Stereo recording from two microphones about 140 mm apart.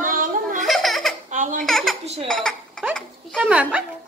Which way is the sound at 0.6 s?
Centre (ahead or behind).